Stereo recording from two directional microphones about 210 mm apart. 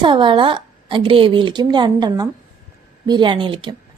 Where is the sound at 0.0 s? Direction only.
20° right (ahead or behind).